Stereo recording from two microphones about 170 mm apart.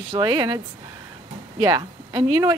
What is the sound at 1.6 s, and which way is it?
Speech, 20° right (ahead or behind).